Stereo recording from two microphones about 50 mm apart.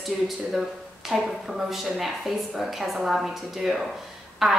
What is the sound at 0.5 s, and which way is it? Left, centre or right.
A woman's voice, centre.